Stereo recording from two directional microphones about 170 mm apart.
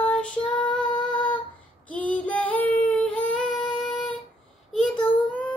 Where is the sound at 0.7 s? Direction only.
25° left (ahead or behind).